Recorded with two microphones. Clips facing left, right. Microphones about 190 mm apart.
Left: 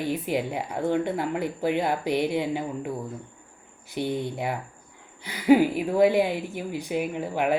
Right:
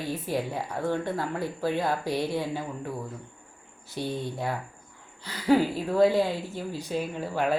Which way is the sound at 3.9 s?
15° left (ahead or behind).